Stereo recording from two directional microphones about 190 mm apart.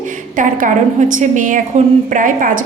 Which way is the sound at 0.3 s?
45° right (ahead or behind).